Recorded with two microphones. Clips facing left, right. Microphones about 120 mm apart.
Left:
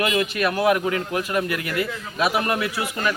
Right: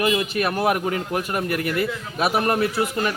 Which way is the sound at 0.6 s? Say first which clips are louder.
Left 1 dB; 50° right (ahead or behind).